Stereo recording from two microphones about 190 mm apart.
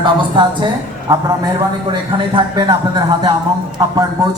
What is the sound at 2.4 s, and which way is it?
Speech, 25° right (ahead or behind).